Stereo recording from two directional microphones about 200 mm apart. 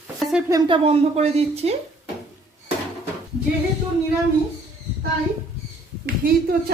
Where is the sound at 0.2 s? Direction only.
Centre (ahead or behind).